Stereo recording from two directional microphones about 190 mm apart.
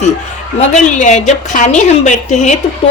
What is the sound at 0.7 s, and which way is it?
A woman's voice, 40° left (ahead or behind).